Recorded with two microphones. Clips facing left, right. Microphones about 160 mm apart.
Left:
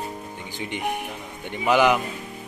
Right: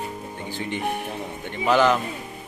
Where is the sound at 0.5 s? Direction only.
15° left (ahead or behind).